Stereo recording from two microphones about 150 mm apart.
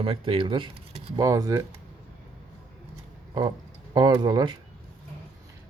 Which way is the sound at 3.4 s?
25° right (ahead or behind).